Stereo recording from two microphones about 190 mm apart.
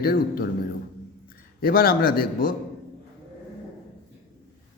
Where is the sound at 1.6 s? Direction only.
50° left (ahead or behind).